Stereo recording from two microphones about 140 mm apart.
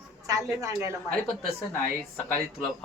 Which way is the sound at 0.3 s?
25° right (ahead or behind).